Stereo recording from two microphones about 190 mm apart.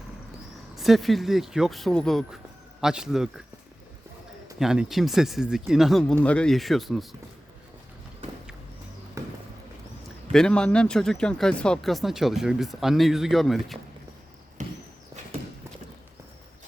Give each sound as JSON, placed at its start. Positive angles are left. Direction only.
{"t": 0.8, "sound": "speech", "side_deg": 0}
{"t": 4.6, "sound": "speech", "side_deg": -5}
{"t": 9.2, "sound": "a sound", "side_deg": -15}
{"t": 10.3, "sound": "speech", "side_deg": 5}
{"t": 14.6, "sound": "horse", "side_deg": -40}